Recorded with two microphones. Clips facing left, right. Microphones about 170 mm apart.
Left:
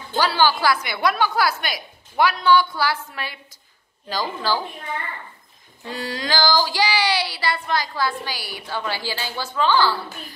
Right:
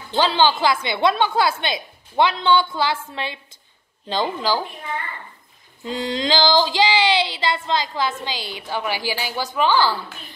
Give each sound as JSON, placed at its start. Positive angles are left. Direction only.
{"t": 0.1, "sound": "female singing", "side_deg": -20}
{"t": 4.1, "sound": "a woman's voice", "side_deg": -20}
{"t": 5.9, "sound": "female singing", "side_deg": -20}